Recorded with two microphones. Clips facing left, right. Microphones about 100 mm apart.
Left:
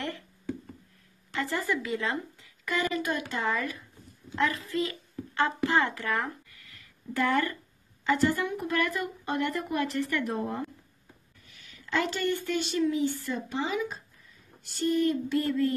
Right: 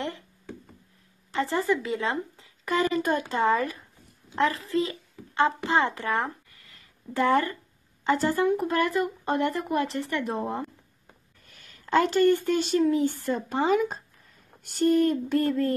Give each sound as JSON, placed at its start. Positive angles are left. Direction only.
{"t": 1.3, "sound": "a child's voice", "side_deg": -30}
{"t": 11.4, "sound": "speech", "side_deg": -45}
{"t": 14.6, "sound": "a sound", "side_deg": -45}